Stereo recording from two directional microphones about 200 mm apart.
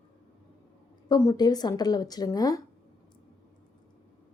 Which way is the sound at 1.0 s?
20° left (ahead or behind).